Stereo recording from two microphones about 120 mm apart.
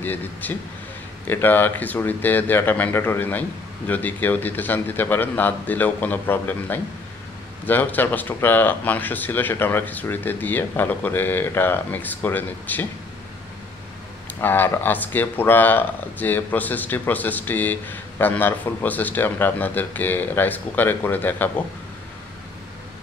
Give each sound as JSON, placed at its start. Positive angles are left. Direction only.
{"t": 0.0, "sound": "speech", "side_deg": 15}
{"t": 14.4, "sound": "speech", "side_deg": 15}